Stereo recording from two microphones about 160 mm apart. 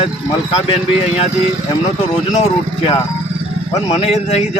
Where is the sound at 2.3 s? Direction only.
40° left (ahead or behind).